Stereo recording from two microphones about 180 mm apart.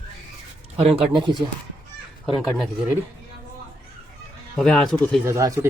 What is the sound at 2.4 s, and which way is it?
Speech, centre (ahead or behind).